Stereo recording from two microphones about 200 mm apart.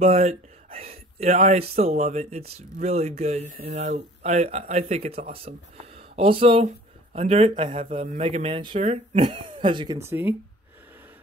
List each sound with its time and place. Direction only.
0.0 s speech: 30° right (ahead or behind)
10.0 s speech: 10° right (ahead or behind)